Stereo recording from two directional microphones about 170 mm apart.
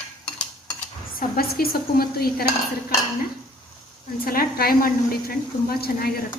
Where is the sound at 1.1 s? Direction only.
60° left (ahead or behind).